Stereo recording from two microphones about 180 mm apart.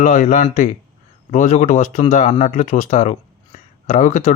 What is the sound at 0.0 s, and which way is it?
Speech, 45° left (ahead or behind).